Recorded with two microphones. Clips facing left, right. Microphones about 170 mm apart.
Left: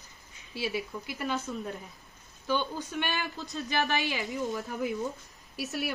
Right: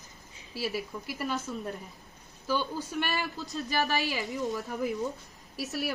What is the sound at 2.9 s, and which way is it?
Speech, 5° right (ahead or behind).